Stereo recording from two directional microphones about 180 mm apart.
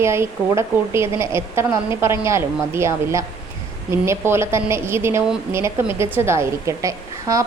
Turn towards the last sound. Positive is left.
turn(degrees=-20)  # may be behind; listen again after turning